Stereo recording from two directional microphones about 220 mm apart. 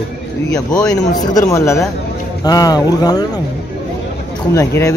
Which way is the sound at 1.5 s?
15° left (ahead or behind).